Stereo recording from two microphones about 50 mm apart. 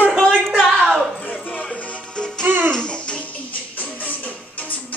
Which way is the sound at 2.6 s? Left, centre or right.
Centre.